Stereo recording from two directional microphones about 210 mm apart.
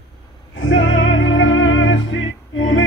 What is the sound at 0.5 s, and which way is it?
Music, 65° left (ahead or behind).